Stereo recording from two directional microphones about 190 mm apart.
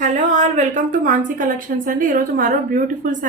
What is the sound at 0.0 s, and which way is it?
A woman's voice, 40° right (ahead or behind).